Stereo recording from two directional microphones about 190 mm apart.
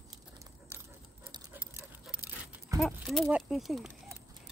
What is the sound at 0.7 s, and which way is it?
Dog, 10° right (ahead or behind).